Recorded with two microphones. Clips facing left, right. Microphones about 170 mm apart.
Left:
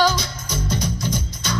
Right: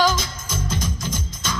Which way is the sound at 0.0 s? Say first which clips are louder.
Left 1 dB; 50° right (ahead or behind).